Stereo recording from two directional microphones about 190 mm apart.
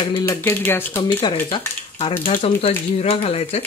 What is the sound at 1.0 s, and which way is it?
Speech, 25° left (ahead or behind).